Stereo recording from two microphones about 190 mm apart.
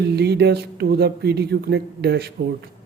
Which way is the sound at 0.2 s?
60° right (ahead or behind).